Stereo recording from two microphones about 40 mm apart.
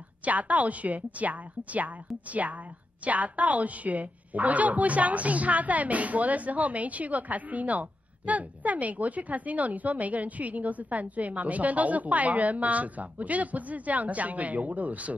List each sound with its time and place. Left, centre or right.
0.2 s speech: right